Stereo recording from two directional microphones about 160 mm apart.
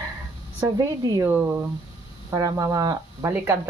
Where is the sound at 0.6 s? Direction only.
20° right (ahead or behind).